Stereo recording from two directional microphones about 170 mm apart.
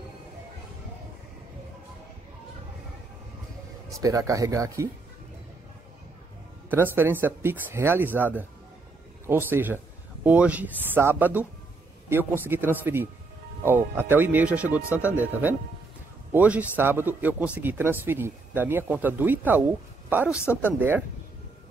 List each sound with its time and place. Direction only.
3.9 s speech: 20° right (ahead or behind)
6.7 s a man's voice: 10° right (ahead or behind)
16.3 s a man's voice: 10° right (ahead or behind)